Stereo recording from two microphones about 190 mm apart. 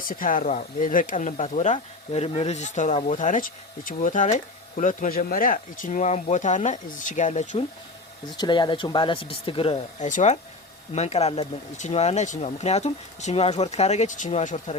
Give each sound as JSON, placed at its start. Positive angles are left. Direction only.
{"t": 0.1, "sound": "speech", "side_deg": 45}
{"t": 8.4, "sound": "speech", "side_deg": 25}
{"t": 10.1, "sound": "speech", "side_deg": 40}